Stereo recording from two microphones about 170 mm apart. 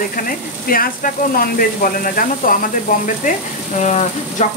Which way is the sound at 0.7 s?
55° left (ahead or behind).